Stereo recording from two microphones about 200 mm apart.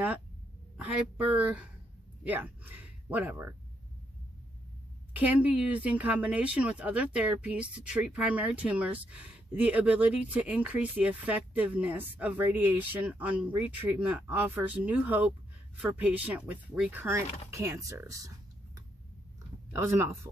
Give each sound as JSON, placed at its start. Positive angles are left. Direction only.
{"t": 0.7, "sound": "speech", "side_deg": -5}
{"t": 5.1, "sound": "speech", "side_deg": -10}
{"t": 19.7, "sound": "speech", "side_deg": -15}